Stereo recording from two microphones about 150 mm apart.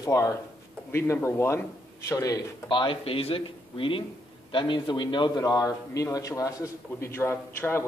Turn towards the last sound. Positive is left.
turn(degrees=15)  # may be behind; listen again after turning